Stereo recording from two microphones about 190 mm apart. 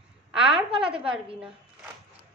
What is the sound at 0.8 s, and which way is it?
Speech, 5° right (ahead or behind).